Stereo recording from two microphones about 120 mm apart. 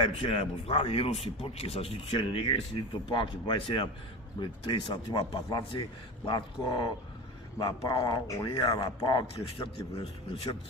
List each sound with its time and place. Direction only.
0.0 s a man's voice: 55° left (ahead or behind)